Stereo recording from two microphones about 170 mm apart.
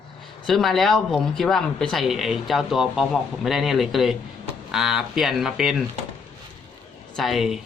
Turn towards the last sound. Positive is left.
turn(degrees=0)  # may be behind; listen again after turning